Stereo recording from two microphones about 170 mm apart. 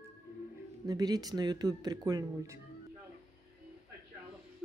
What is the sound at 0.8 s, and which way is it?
Speech, 20° right (ahead or behind).